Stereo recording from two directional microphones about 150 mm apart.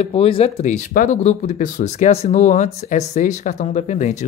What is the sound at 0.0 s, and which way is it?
Speech, 45° left (ahead or behind).